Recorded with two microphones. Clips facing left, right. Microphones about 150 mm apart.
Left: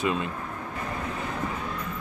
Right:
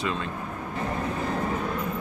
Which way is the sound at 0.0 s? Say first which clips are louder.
Left 3 dB; 15° left (ahead or behind).